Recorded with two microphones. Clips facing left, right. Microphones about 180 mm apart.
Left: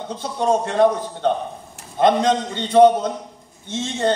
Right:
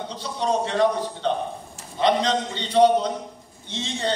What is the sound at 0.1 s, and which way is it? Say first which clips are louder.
A man's voice: left 5 dB; 50° left (ahead or behind).